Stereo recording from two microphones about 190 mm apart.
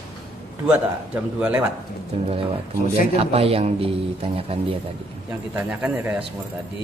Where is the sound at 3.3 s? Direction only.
30° right (ahead or behind).